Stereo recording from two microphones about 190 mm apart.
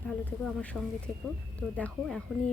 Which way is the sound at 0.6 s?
5° left (ahead or behind).